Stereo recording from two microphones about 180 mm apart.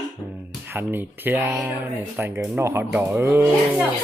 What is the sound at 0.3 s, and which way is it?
Speech, 10° right (ahead or behind).